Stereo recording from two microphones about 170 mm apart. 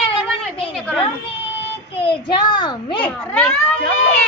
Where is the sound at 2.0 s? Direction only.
30° left (ahead or behind).